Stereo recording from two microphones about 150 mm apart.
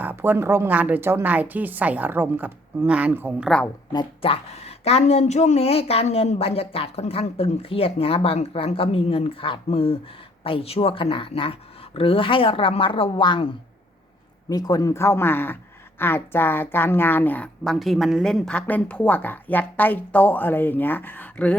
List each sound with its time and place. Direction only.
0.0 s a woman's voice: 10° right (ahead or behind)
3.5 s speech: 5° left (ahead or behind)
3.9 s speech: 40° left (ahead or behind)
14.5 s speech: 25° left (ahead or behind)
17.6 s speech: centre (ahead or behind)